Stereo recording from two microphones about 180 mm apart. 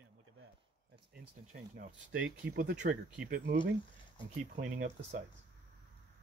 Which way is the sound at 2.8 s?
65° right (ahead or behind).